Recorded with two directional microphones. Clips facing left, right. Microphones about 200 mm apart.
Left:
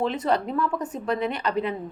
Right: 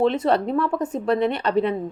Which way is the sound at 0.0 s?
30° right (ahead or behind).